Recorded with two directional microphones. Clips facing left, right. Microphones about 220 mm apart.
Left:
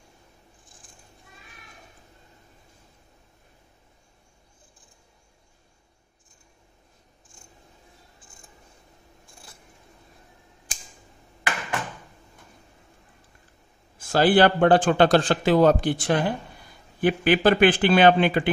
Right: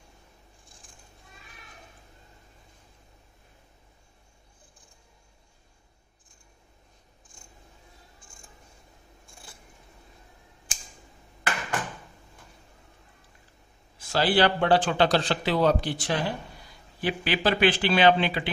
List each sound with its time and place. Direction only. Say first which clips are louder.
8.2 s scissors: left 1 dB; 20° left (ahead or behind)
9.2 s keys jangling: right 1 dB; centre (ahead or behind)
13.9 s a man's voice: left 5 dB; 50° left (ahead or behind)